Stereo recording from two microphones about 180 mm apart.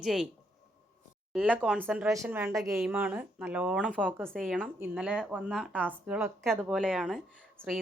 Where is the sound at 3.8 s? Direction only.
5° left (ahead or behind).